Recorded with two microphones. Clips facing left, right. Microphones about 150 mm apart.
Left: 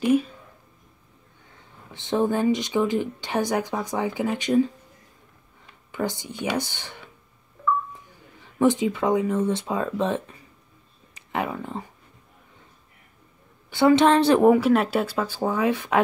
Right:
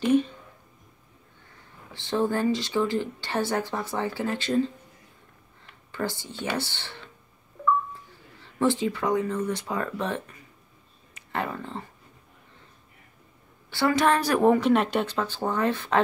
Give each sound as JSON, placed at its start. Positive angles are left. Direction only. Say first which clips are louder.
{"t": 0.0, "sound": "a sound", "louder": "left 1 dB", "side_deg": 5}
{"t": 2.0, "sound": "speech", "louder": "left 3 dB", "side_deg": 20}
{"t": 5.9, "sound": "speech", "louder": "left 3 dB", "side_deg": 15}
{"t": 11.3, "sound": "speech", "louder": "left 3 dB", "side_deg": 15}
{"t": 13.7, "sound": "a woman's voice", "louder": "left 5 dB", "side_deg": 20}
{"t": 14.4, "sound": "speech", "louder": "left 3 dB", "side_deg": 5}